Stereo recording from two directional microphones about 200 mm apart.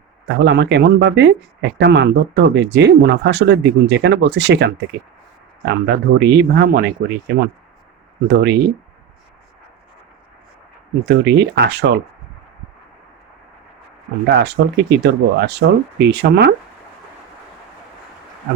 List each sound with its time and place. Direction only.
0.3 s speech: 60° right (ahead or behind)
11.0 s speech: 60° right (ahead or behind)
14.3 s speech: 55° right (ahead or behind)